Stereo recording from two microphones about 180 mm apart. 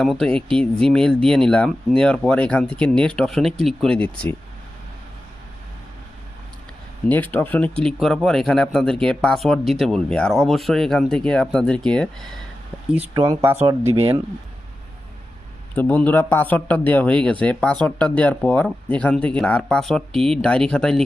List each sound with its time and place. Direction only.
0.0 s speech: 5° left (ahead or behind)
7.1 s speech: 10° left (ahead or behind)
13.1 s speech: 20° right (ahead or behind)
15.7 s speech: 10° left (ahead or behind)